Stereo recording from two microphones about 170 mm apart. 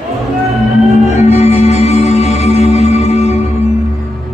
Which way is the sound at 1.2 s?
40° left (ahead or behind).